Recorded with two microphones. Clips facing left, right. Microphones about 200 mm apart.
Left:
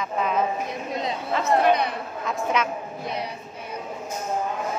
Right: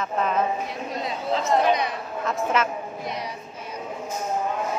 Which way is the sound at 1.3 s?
60° left (ahead or behind).